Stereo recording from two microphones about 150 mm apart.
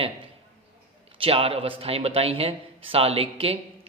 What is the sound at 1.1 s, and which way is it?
Speech, 35° right (ahead or behind).